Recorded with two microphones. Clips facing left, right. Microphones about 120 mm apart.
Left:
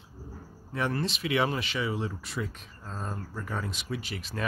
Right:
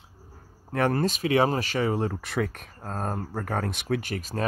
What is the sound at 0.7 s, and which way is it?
Speech, 50° right (ahead or behind).